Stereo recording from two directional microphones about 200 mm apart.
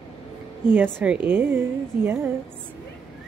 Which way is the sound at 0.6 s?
10° right (ahead or behind).